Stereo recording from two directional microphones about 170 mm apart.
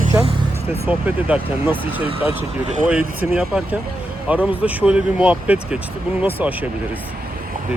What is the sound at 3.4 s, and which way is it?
Speech, 5° right (ahead or behind).